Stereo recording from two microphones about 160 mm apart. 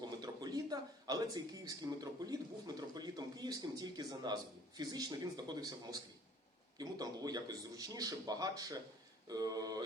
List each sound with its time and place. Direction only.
0.0 s a man's voice: 25° right (ahead or behind)